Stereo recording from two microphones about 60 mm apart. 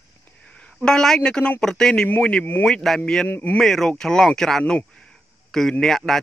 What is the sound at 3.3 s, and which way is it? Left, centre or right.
Speech, left.